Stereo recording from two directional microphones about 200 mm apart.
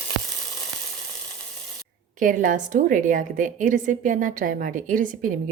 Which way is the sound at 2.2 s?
40° right (ahead or behind).